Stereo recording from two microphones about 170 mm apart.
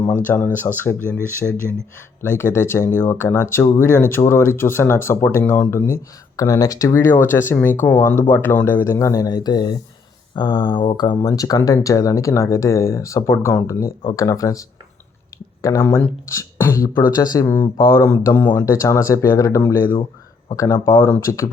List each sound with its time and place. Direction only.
0.1 s speech: 10° left (ahead or behind)
2.2 s speech: 15° left (ahead or behind)
18.3 s speech: 10° left (ahead or behind)